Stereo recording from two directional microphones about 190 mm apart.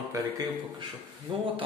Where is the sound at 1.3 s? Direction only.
25° right (ahead or behind).